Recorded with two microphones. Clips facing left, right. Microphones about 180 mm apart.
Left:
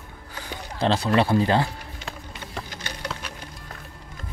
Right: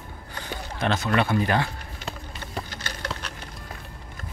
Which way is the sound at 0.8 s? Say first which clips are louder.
Left 3 dB; 30° left (ahead or behind).